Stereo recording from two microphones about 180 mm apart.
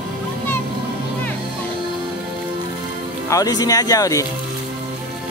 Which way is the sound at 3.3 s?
20° left (ahead or behind).